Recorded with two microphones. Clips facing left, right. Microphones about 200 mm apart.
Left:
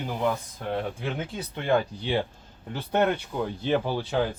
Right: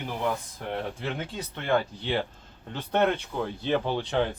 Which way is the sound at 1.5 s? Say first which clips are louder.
Left 2 dB; 10° left (ahead or behind).